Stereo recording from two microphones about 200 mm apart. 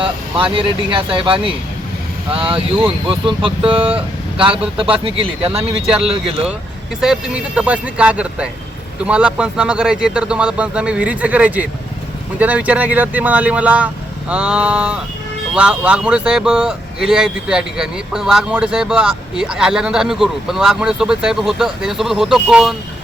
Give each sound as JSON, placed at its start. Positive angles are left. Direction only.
{"t": 0.0, "sound": "speech", "side_deg": -25}
{"t": 5.0, "sound": "speech", "side_deg": -30}
{"t": 7.0, "sound": "speech", "side_deg": -5}